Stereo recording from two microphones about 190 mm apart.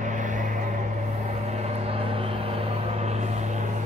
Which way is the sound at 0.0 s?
40° right (ahead or behind).